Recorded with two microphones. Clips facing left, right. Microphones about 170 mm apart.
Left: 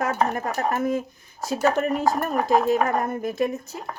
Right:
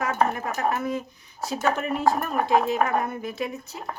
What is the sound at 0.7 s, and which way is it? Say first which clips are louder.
Speech: left 4 dB; 50° left (ahead or behind).